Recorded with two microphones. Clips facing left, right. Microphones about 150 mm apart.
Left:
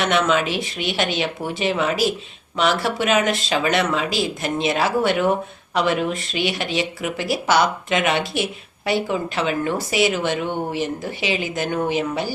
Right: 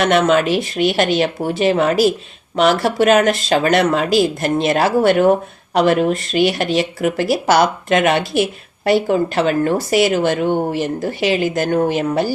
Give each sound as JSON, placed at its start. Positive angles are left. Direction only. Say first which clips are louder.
{"t": 0.0, "sound": "a woman's voice", "louder": "right 5 dB", "side_deg": -45}